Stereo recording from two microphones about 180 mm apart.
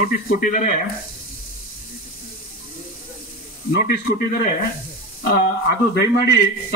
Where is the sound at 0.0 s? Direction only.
50° left (ahead or behind).